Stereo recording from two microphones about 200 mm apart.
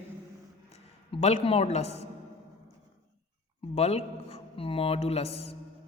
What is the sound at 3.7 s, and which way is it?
A man's voice, 30° left (ahead or behind).